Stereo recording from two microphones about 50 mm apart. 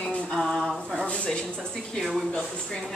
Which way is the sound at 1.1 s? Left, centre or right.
Centre.